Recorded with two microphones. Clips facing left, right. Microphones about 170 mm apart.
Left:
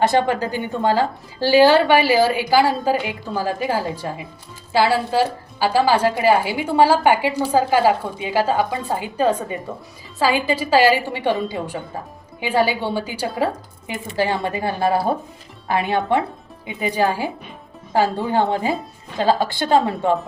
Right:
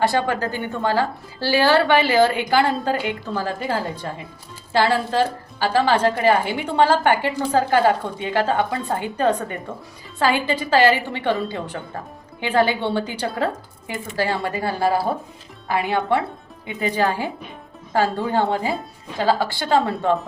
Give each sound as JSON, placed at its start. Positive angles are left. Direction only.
{"t": 0.0, "sound": "a woman's voice", "side_deg": 20}